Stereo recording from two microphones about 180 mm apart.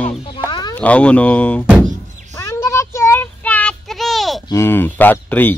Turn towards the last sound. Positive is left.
turn(degrees=10)  # may be behind; listen again after turning